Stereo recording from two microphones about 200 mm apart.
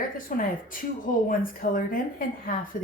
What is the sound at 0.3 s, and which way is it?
Speech, 45° left (ahead or behind).